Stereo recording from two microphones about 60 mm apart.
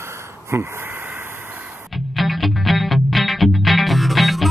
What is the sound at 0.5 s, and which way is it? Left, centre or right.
Speech, right.